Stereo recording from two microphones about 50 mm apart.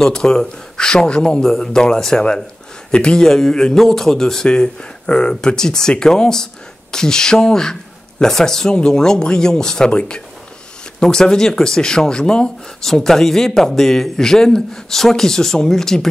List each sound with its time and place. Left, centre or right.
0.0 s speech: centre